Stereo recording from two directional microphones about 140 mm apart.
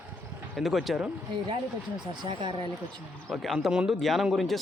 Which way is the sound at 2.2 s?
35° right (ahead or behind).